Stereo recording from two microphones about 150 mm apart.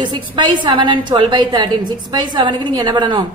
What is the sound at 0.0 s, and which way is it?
A woman's voice, 30° right (ahead or behind).